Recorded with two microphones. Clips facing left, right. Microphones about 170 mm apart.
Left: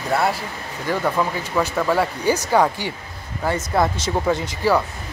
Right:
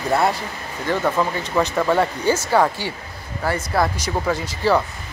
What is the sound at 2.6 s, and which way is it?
Speech, 15° left (ahead or behind).